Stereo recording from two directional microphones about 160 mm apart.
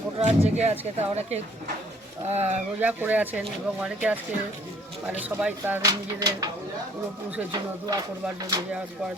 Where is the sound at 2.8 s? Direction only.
10° right (ahead or behind).